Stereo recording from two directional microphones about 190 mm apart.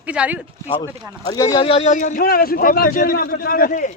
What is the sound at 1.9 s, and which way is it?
A man's voice, 40° left (ahead or behind).